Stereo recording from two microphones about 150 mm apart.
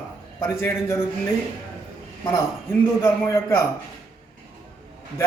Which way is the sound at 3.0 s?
15° left (ahead or behind).